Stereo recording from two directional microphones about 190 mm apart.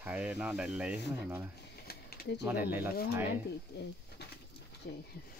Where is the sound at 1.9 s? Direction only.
55° left (ahead or behind).